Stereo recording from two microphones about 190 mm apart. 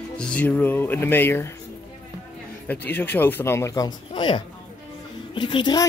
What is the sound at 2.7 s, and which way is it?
Speech, 10° left (ahead or behind).